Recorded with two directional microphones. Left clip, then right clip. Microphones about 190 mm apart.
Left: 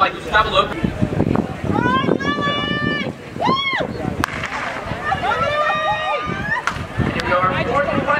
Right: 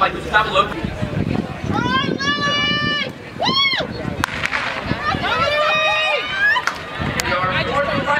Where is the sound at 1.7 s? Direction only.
10° right (ahead or behind).